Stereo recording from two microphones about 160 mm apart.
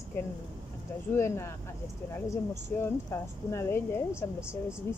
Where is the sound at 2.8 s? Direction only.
15° left (ahead or behind).